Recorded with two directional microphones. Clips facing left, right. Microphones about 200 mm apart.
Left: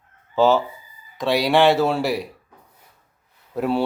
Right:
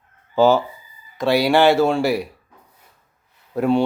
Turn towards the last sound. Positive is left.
turn(degrees=0)  # may be behind; listen again after turning